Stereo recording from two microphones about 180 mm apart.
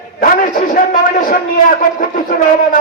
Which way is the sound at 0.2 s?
50° left (ahead or behind).